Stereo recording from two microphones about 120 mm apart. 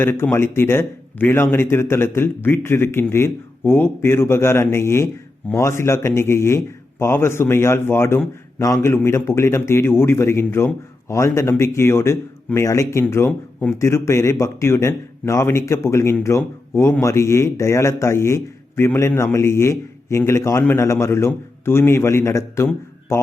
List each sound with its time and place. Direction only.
0.0 s speech: 20° left (ahead or behind)